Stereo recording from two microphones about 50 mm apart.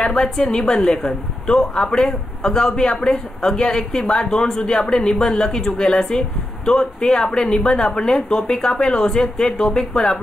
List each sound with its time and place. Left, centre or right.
0.0 s a woman's voice: centre